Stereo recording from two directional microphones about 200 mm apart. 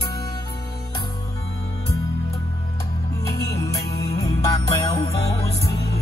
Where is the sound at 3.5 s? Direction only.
15° left (ahead or behind).